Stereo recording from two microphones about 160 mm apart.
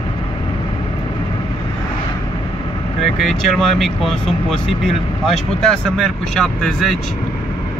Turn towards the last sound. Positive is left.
turn(degrees=5)  # may be behind; listen again after turning